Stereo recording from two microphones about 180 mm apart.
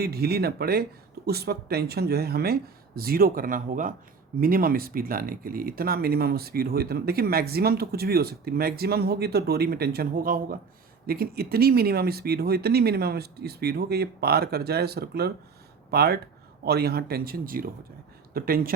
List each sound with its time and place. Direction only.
0.0 s speech: 60° right (ahead or behind)